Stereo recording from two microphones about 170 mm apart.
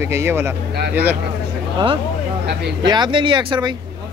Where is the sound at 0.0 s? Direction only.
15° right (ahead or behind).